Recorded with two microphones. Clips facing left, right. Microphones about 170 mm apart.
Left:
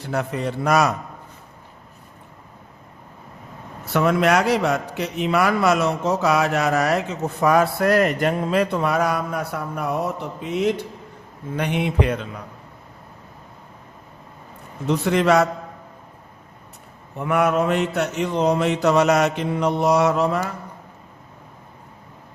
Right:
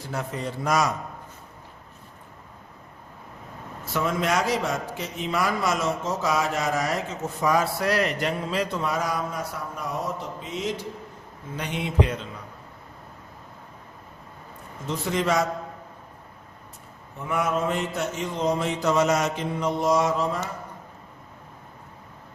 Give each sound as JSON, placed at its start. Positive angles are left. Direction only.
{"t": 0.0, "sound": "a man's voice", "side_deg": 65}
{"t": 3.8, "sound": "a man's voice", "side_deg": 65}
{"t": 14.8, "sound": "mantra", "side_deg": 70}
{"t": 17.2, "sound": "mantra", "side_deg": 65}